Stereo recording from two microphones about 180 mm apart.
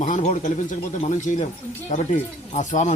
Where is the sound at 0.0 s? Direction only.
40° left (ahead or behind).